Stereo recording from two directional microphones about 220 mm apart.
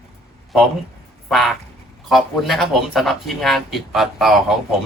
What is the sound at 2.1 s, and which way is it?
Speech, centre (ahead or behind).